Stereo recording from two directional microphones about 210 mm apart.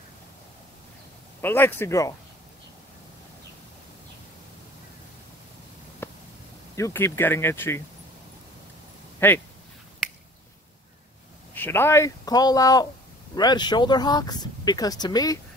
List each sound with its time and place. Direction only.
1.4 s a man's voice: 10° left (ahead or behind)
6.0 s a sound: 10° left (ahead or behind)
6.7 s a man's voice: 15° left (ahead or behind)
9.2 s a man's voice: 10° left (ahead or behind)
11.5 s a man's voice: 10° left (ahead or behind)